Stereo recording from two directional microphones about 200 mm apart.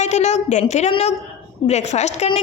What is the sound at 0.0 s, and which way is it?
A woman's voice, 35° left (ahead or behind).